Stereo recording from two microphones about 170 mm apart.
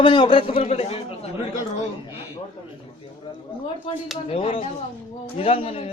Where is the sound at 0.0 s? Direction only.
30° left (ahead or behind).